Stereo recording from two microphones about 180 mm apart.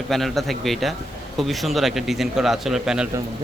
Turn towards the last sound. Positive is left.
turn(degrees=-5)  # may be behind; listen again after turning